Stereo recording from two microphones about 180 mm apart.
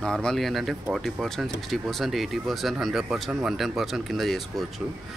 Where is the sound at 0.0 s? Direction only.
5° left (ahead or behind).